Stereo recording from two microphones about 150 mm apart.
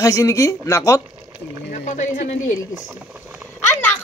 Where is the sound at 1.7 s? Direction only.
55° left (ahead or behind).